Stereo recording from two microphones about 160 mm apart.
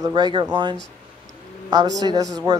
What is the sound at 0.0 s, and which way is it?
A woman's voice, 25° right (ahead or behind).